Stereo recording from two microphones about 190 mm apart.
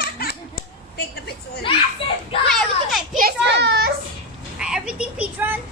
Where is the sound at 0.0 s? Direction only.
55° left (ahead or behind).